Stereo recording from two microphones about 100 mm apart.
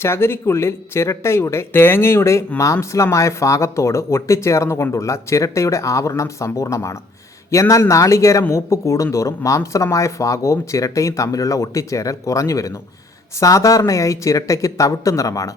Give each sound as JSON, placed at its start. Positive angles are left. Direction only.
{"t": 0.0, "sound": "speech", "side_deg": 25}